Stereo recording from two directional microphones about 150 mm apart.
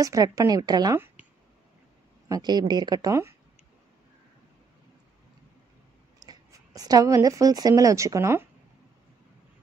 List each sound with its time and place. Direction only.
0.0 s a woman's voice: 20° right (ahead or behind)
2.2 s a woman's voice: 25° right (ahead or behind)
6.1 s speech: 25° right (ahead or behind)